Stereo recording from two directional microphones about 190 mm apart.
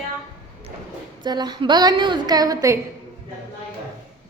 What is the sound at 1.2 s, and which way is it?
A woman's voice, 20° right (ahead or behind).